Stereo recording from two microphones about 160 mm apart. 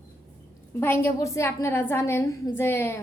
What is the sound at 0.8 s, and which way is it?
A woman's voice, 15° left (ahead or behind).